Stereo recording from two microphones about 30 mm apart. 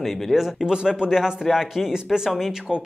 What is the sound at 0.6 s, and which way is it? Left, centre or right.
Speech, right.